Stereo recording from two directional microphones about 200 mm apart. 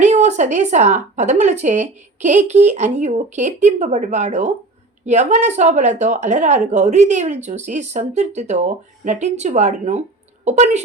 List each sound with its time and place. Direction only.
0.0 s a woman's voice: 35° right (ahead or behind)